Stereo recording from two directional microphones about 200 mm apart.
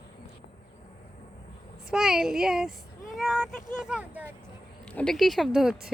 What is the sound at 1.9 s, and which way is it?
Speech, centre (ahead or behind).